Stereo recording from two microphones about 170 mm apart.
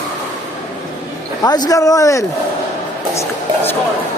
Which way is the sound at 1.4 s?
25° left (ahead or behind).